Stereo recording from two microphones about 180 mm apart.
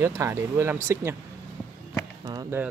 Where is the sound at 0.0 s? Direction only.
15° right (ahead or behind).